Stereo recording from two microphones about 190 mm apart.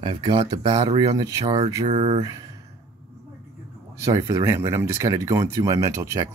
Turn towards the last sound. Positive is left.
turn(degrees=-15)  # may be behind; listen again after turning